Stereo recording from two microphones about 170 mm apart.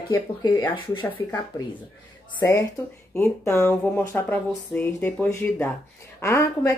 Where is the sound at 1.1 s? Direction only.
15° left (ahead or behind).